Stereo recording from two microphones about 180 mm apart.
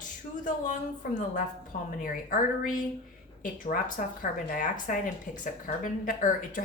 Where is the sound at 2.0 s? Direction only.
45° left (ahead or behind).